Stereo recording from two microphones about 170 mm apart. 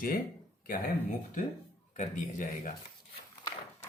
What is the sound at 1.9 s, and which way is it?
Speech, 50° left (ahead or behind).